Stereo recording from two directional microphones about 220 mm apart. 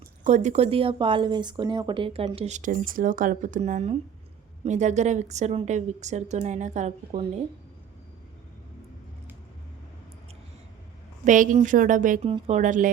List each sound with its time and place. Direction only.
0.3 s a woman's voice: 30° right (ahead or behind)
11.3 s a woman's voice: 35° right (ahead or behind)